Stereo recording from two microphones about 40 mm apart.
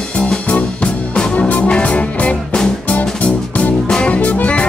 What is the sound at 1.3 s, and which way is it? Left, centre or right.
Music, left.